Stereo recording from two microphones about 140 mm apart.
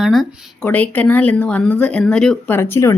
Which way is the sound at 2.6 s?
20° left (ahead or behind).